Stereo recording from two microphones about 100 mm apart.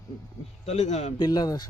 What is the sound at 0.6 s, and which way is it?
Speech, 90° left.